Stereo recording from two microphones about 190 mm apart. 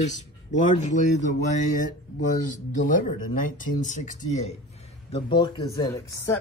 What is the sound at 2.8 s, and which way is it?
Speech, 45° left (ahead or behind).